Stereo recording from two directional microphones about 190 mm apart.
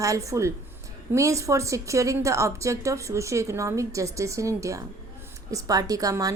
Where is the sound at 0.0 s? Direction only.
15° right (ahead or behind).